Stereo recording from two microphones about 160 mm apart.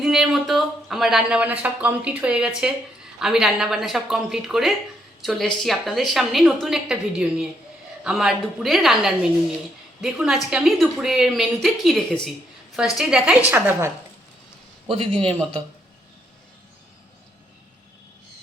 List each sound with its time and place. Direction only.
0.0 s speech: centre (ahead or behind)
14.8 s speech: 35° right (ahead or behind)